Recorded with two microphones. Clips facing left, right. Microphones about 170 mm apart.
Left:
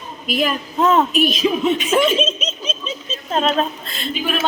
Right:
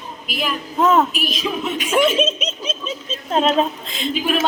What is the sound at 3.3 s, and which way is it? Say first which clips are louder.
Speech: right 2 dB; 10° right (ahead or behind).